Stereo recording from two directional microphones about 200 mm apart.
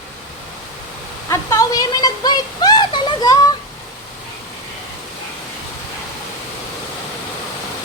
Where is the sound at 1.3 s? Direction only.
15° left (ahead or behind).